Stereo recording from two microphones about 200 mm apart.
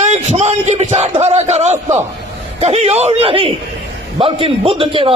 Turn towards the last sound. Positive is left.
turn(degrees=-25)  # may be behind; listen again after turning